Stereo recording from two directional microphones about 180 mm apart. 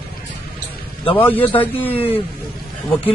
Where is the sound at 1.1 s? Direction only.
10° left (ahead or behind).